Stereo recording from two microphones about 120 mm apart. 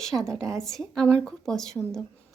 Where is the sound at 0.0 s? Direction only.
5° left (ahead or behind).